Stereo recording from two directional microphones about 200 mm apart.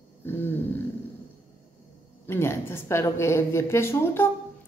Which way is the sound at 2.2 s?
10° left (ahead or behind).